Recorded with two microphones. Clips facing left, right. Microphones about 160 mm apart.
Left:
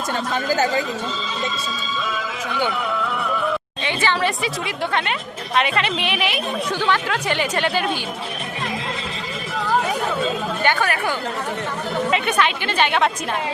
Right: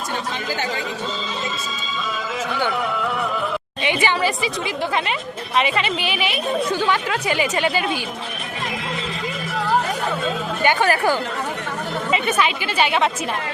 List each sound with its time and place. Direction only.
3.8 s a woman's voice: 15° right (ahead or behind)
4.2 s a woman's voice: centre (ahead or behind)
10.8 s speech: 35° right (ahead or behind)
12.1 s a woman's voice: 5° right (ahead or behind)